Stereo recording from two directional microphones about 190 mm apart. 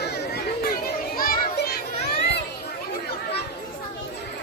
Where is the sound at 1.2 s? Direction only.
50° left (ahead or behind).